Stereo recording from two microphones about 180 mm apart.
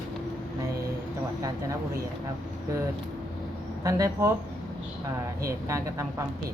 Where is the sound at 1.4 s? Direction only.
20° right (ahead or behind).